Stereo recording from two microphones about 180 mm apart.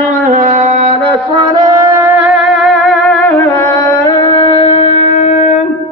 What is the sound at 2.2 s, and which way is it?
Music, 5° right (ahead or behind).